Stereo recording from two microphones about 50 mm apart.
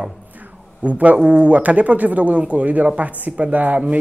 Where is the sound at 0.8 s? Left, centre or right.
Right.